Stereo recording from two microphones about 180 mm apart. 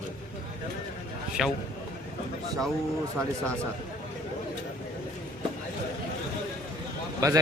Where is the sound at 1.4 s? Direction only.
Centre (ahead or behind).